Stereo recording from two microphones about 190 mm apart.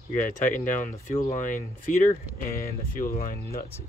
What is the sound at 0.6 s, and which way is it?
Speech, 40° left (ahead or behind).